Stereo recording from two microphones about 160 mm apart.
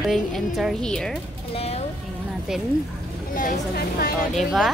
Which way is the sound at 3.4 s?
70° left (ahead or behind).